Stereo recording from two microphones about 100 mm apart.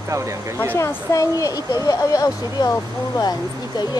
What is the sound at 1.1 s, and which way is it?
Speech, 35° left (ahead or behind).